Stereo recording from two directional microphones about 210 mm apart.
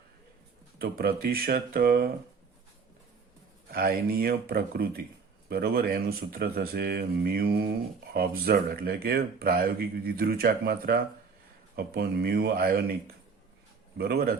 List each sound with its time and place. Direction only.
0.8 s speech: 45° right (ahead or behind)
3.7 s speech: 45° right (ahead or behind)
14.0 s speech: 45° right (ahead or behind)